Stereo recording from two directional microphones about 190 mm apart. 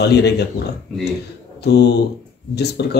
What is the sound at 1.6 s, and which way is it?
Speech, 60° left (ahead or behind).